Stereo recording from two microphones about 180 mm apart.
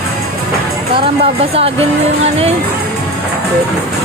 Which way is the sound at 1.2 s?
30° right (ahead or behind).